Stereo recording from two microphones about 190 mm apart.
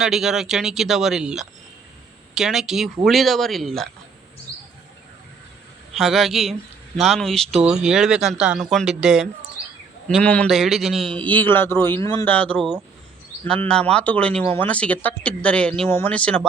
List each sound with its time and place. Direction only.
0.0 s speech: centre (ahead or behind)
5.9 s speech: centre (ahead or behind)